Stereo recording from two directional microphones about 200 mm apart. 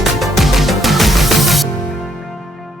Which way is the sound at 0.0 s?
Centre (ahead or behind).